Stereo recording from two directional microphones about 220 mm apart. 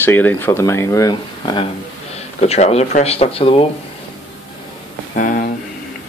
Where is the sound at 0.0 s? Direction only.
10° left (ahead or behind); by 3.6 s 25° left (ahead or behind).